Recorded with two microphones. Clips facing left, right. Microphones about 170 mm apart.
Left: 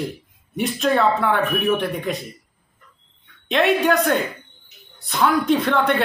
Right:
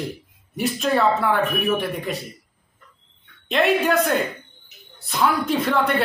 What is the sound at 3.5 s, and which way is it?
A woman's voice, centre (ahead or behind).